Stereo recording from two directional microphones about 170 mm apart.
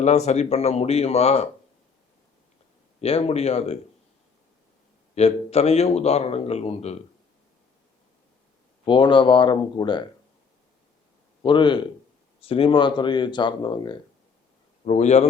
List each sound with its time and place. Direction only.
0.0 s a man's voice: 40° left (ahead or behind)
3.0 s a man's voice: 35° left (ahead or behind)
5.1 s a man's voice: 40° left (ahead or behind)
8.8 s speech: 30° left (ahead or behind)
11.4 s speech: 30° left (ahead or behind)
14.8 s a man's voice: 40° left (ahead or behind)